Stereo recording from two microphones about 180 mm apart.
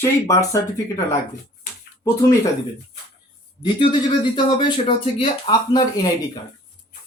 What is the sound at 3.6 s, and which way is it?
Speech, 25° left (ahead or behind).